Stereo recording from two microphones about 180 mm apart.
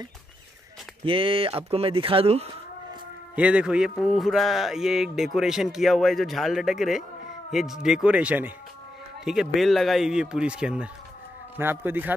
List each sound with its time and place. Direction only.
1.0 s speech: 30° right (ahead or behind)
3.3 s a man's voice: 5° right (ahead or behind)